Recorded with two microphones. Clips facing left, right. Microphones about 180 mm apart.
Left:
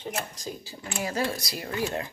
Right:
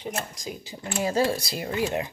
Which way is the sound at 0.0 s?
15° right (ahead or behind).